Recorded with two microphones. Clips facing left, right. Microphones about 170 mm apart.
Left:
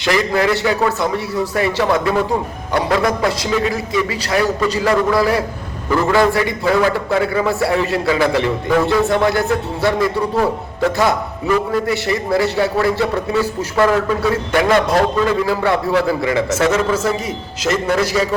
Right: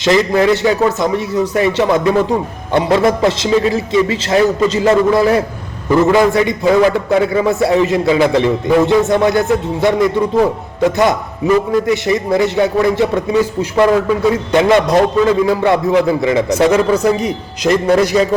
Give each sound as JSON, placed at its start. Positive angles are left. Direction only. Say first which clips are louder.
{"t": 0.0, "sound": "a man's voice", "louder": "right 5 dB", "side_deg": -20}